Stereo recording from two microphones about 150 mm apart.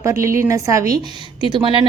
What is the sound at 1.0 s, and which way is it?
Speech, 30° right (ahead or behind).